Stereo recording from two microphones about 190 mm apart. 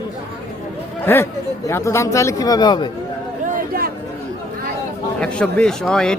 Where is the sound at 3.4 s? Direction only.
50° right (ahead or behind).